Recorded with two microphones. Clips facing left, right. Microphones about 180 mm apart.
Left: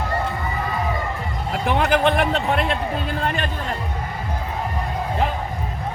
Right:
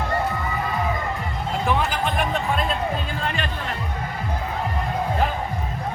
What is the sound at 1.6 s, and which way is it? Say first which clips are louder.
Music: left 6 dB; 65° left (ahead or behind).